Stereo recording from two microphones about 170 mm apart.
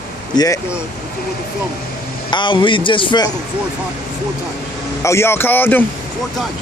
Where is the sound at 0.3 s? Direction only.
25° left (ahead or behind).